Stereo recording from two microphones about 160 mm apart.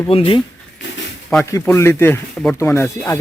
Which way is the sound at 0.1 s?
35° left (ahead or behind).